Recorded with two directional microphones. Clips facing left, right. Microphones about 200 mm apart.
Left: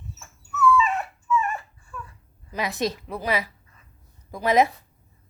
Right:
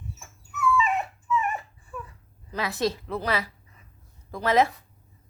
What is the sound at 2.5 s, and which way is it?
A woman's voice, 15° left (ahead or behind).